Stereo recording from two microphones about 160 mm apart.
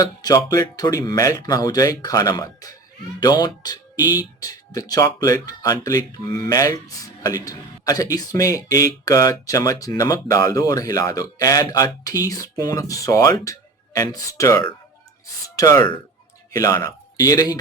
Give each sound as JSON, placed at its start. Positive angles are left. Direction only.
{"t": 0.0, "sound": "speech", "side_deg": 25}